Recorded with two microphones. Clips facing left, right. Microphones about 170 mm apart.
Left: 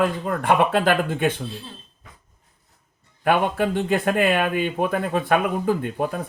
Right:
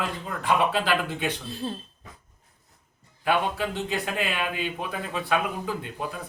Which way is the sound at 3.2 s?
55° left (ahead or behind).